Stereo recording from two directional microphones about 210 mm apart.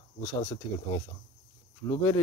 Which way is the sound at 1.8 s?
15° left (ahead or behind).